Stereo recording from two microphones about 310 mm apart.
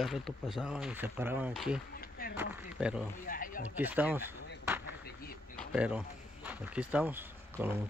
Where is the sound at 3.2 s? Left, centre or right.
Left.